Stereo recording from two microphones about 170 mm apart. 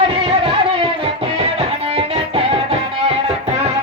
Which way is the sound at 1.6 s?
35° right (ahead or behind).